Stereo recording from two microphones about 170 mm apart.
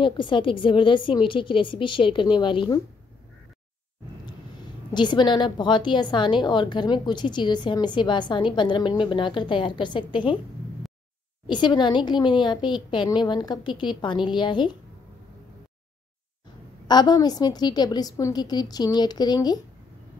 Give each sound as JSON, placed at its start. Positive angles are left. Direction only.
{"t": 0.0, "sound": "a woman's voice", "side_deg": 30}
{"t": 4.9, "sound": "a woman's voice", "side_deg": 25}
{"t": 11.4, "sound": "a woman's voice", "side_deg": 25}
{"t": 16.8, "sound": "a woman's voice", "side_deg": 25}